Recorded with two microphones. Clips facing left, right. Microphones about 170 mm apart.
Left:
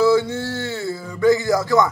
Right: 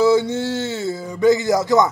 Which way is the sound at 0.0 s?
20° right (ahead or behind).